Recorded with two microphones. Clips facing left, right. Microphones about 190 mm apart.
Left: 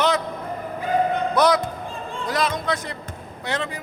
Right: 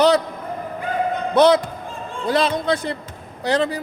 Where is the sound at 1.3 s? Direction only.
25° right (ahead or behind).